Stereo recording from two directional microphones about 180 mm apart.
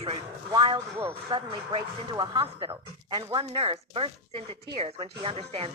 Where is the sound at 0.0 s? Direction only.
30° right (ahead or behind).